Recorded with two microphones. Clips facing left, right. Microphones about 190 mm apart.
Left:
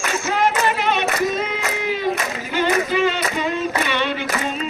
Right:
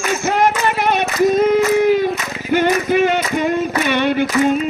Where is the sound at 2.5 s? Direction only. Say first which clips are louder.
Right 5 dB; 55° right (ahead or behind).